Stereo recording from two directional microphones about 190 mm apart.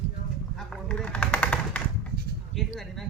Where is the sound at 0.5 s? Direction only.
5° left (ahead or behind).